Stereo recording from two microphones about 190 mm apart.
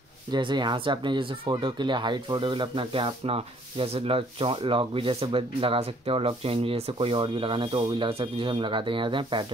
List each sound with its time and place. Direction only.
0.3 s speech: 25° right (ahead or behind)